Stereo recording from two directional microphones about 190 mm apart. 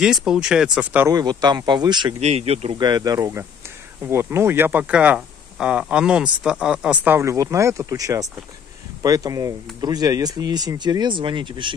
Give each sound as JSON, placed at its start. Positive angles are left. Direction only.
{"t": 0.0, "sound": "speech", "side_deg": -5}
{"t": 1.0, "sound": "speech", "side_deg": -20}
{"t": 2.8, "sound": "speech", "side_deg": -20}